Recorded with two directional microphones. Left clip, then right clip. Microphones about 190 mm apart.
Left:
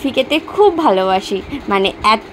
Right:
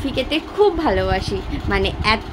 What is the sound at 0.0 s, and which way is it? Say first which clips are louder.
A woman's voice: left 6 dB; 20° left (ahead or behind).